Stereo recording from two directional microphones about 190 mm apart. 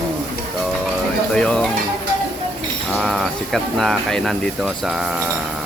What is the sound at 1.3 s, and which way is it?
Speech, 5° left (ahead or behind).